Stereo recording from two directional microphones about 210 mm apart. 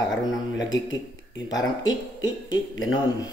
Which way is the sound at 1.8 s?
65° left (ahead or behind).